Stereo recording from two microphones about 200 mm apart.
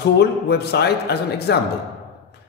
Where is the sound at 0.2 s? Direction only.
55° left (ahead or behind).